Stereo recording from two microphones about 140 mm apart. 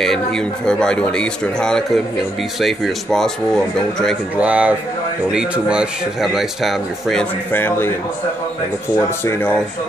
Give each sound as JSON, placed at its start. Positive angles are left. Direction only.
{"t": 0.7, "sound": "a man's voice", "side_deg": 5}
{"t": 4.4, "sound": "a man's voice", "side_deg": -10}
{"t": 7.5, "sound": "speech", "side_deg": 15}
{"t": 8.9, "sound": "speech", "side_deg": 15}